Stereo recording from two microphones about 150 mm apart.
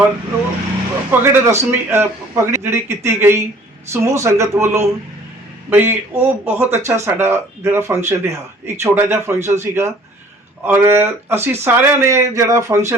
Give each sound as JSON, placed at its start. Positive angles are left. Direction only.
{"t": 1.2, "sound": "speech", "side_deg": -15}